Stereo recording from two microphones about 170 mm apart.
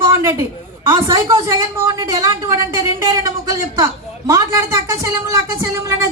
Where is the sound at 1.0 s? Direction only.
20° right (ahead or behind).